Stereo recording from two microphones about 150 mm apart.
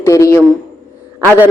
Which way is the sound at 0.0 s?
20° left (ahead or behind).